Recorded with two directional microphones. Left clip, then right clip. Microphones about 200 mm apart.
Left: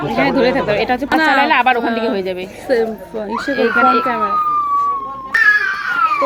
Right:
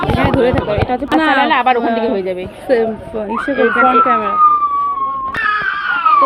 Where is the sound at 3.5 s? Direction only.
20° left (ahead or behind).